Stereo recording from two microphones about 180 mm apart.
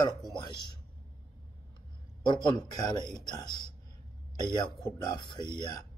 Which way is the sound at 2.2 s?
25° left (ahead or behind).